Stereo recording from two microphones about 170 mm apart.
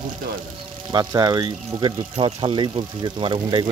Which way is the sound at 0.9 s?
25° right (ahead or behind).